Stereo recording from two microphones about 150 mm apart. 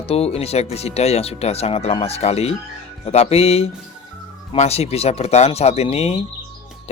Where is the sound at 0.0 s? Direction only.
40° left (ahead or behind).